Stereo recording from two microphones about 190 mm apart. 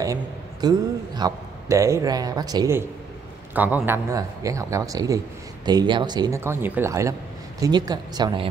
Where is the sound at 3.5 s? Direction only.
10° right (ahead or behind).